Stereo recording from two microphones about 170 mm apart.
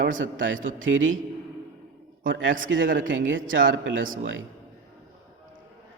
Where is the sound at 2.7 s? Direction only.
90° right.